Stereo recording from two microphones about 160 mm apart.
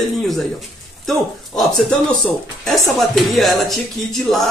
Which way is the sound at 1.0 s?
Centre (ahead or behind).